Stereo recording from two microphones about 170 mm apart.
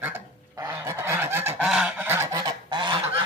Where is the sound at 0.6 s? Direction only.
20° right (ahead or behind).